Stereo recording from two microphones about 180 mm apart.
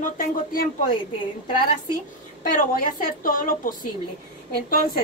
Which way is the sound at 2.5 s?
50° left (ahead or behind).